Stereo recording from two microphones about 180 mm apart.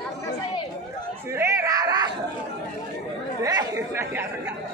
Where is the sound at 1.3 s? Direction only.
15° right (ahead or behind).